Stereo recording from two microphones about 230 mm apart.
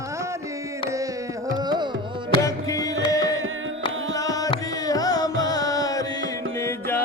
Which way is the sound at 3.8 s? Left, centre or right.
Centre.